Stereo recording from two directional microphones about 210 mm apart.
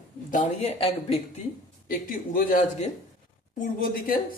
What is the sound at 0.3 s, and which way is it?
Speech, 35° left (ahead or behind).